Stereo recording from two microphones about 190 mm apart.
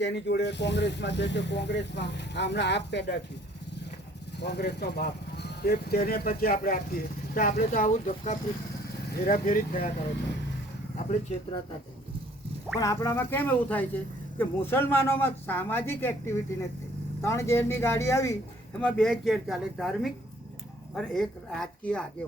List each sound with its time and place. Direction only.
0.0 s speech: 65° left (ahead or behind)
4.4 s speech: 60° left (ahead or behind); by 9.9 s 45° left (ahead or behind)
10.9 s speech: 40° left (ahead or behind)
12.8 s speech: 15° left (ahead or behind)
18.8 s speech: 5° left (ahead or behind)